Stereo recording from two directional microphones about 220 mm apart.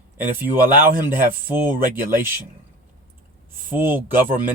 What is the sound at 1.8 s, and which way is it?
Speech, 40° right (ahead or behind).